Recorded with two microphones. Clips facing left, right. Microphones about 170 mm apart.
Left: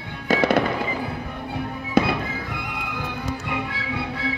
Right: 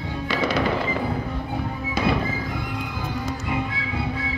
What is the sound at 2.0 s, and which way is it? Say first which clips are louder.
Fireworks: left 4 dB; 55° left (ahead or behind).